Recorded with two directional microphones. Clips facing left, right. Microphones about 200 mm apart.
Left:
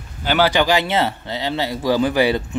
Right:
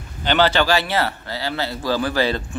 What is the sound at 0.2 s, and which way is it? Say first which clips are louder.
Speech: left 1 dB; 10° left (ahead or behind).